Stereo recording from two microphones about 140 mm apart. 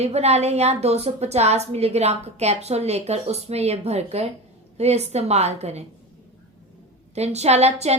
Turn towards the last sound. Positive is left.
turn(degrees=-50)  # may be behind; listen again after turning